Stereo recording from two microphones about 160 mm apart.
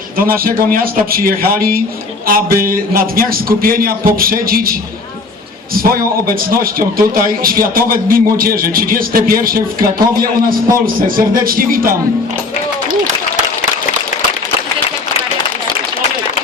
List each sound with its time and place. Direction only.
0.2 s a man's voice: 65° right (ahead or behind)